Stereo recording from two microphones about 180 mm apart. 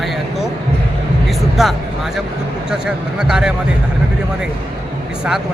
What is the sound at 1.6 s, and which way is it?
Speech, centre (ahead or behind).